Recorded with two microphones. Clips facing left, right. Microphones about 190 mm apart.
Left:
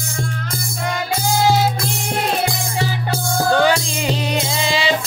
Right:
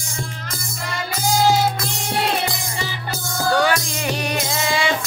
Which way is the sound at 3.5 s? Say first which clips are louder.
Left 1 dB; 20° left (ahead or behind).